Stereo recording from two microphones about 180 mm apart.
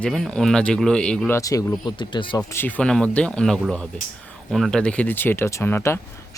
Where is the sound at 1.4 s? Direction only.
20° left (ahead or behind).